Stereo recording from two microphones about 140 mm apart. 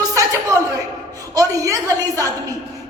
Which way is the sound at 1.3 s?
25° right (ahead or behind).